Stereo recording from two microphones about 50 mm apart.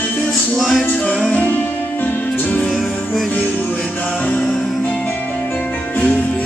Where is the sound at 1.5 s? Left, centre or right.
Left.